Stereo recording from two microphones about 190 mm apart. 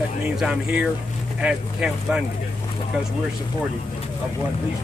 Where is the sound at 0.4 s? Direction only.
5° right (ahead or behind).